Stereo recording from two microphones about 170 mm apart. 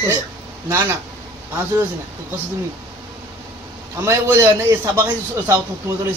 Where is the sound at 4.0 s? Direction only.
15° right (ahead or behind).